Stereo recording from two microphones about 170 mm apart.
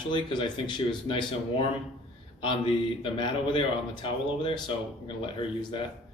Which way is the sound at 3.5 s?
30° left (ahead or behind).